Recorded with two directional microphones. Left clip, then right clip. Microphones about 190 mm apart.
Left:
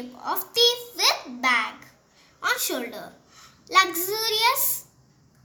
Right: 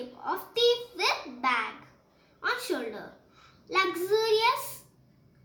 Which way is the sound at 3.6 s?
60° left (ahead or behind).